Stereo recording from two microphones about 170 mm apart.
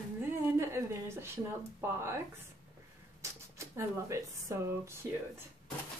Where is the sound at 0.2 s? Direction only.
15° right (ahead or behind).